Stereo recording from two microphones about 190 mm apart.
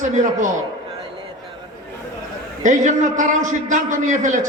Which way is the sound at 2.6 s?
40° right (ahead or behind).